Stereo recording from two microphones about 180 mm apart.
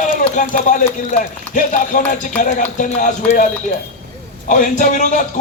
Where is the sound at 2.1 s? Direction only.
45° left (ahead or behind).